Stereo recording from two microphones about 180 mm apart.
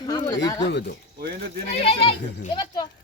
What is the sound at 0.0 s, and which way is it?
Speech, 20° left (ahead or behind).